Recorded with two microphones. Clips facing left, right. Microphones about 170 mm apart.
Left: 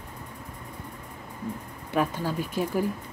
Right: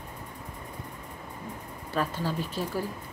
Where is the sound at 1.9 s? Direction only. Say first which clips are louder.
Left 3 dB; 15° left (ahead or behind).